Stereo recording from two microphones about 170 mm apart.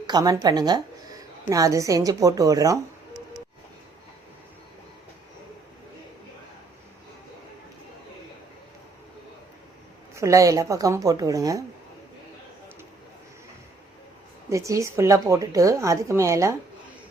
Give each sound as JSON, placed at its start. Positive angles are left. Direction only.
{"t": 0.1, "sound": "a woman's voice", "side_deg": -25}
{"t": 10.2, "sound": "a woman's voice", "side_deg": -20}
{"t": 14.5, "sound": "a woman's voice", "side_deg": -20}